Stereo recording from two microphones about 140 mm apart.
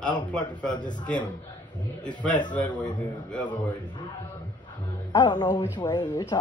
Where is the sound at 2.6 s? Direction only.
10° left (ahead or behind).